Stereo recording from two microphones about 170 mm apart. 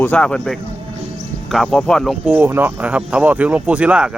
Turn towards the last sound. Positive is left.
turn(degrees=-5)  # may be behind; listen again after turning